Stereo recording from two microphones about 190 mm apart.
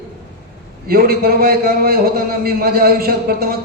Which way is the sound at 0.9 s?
50° right (ahead or behind).